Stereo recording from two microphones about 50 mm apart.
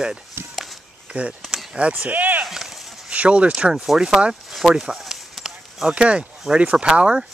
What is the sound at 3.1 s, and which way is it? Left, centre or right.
Speech, right.